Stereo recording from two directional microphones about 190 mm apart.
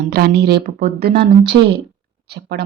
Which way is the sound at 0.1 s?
55° right (ahead or behind).